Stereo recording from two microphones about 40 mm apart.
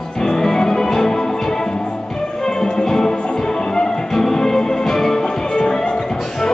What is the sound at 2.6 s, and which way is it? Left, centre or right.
Music, centre.